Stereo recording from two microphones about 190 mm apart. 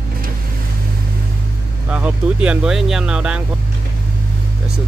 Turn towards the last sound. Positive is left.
turn(degrees=-5)  # may be behind; listen again after turning